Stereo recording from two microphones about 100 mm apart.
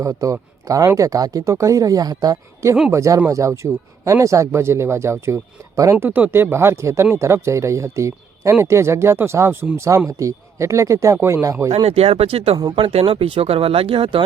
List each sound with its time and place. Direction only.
0.0 s speech: 35° right (ahead or behind)
6.1 s speech: 20° right (ahead or behind)
11.7 s speech: 90° right; by 12.5 s 70° right (ahead or behind)
12.5 s speech: 40° right (ahead or behind)
12.8 s speech: 70° right (ahead or behind)